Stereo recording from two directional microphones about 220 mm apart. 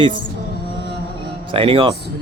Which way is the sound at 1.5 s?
25° right (ahead or behind).